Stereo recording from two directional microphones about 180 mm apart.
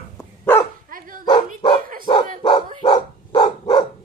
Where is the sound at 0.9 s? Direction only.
50° right (ahead or behind).